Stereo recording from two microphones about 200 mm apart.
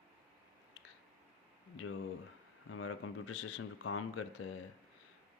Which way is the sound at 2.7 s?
90° left.